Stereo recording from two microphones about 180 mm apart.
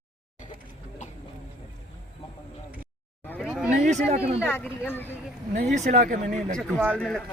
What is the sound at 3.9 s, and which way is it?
Speech, 35° right (ahead or behind).